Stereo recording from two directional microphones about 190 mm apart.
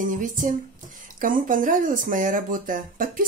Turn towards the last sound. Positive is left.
turn(degrees=-45)  # may be behind; listen again after turning